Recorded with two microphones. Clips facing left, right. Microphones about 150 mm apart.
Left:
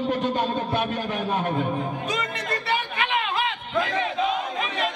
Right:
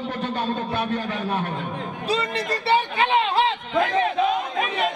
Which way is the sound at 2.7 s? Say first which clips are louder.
Right 7 dB; 30° right (ahead or behind).